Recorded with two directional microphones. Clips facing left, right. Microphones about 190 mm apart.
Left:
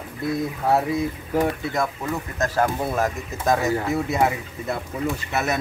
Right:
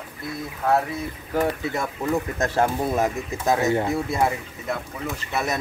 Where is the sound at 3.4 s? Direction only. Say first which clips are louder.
Even; centre (ahead or behind).